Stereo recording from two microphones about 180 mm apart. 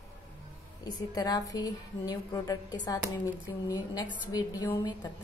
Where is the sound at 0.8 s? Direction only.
20° left (ahead or behind).